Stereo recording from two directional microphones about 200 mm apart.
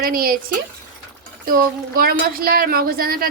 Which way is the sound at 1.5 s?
45° right (ahead or behind).